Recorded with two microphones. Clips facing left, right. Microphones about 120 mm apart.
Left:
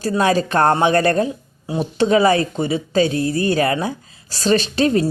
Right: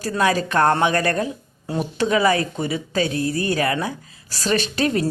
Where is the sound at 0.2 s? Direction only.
30° left (ahead or behind).